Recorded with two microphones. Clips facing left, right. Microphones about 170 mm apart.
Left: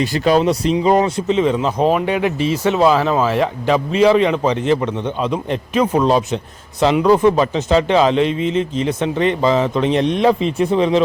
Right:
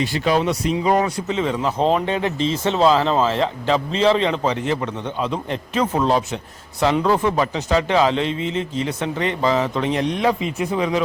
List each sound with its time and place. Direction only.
0.0 s speech: 40° left (ahead or behind); by 11.0 s 25° left (ahead or behind)